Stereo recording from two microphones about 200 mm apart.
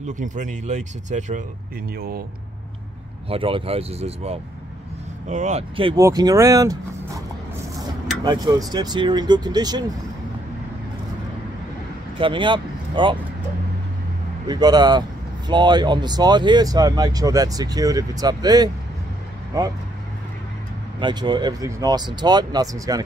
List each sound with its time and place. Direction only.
0.2 s speech: 40° right (ahead or behind)
2.0 s speech: 50° right (ahead or behind)
3.3 s speech: 25° right (ahead or behind)
5.9 s speech: 15° right (ahead or behind)
8.2 s speech: 20° right (ahead or behind)
12.2 s speech: 25° right (ahead or behind)
14.5 s speech: 20° right (ahead or behind)
21.0 s speech: 20° right (ahead or behind)